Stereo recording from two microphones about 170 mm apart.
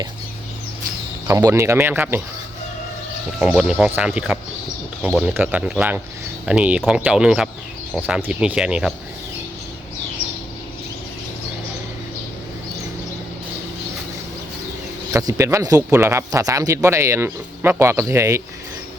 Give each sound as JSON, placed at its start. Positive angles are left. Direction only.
{"t": 1.3, "sound": "speech", "side_deg": -20}
{"t": 3.4, "sound": "speech", "side_deg": -5}
{"t": 15.1, "sound": "speech", "side_deg": -20}